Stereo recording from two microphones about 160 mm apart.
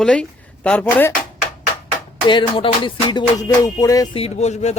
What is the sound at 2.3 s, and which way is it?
Music, 30° left (ahead or behind).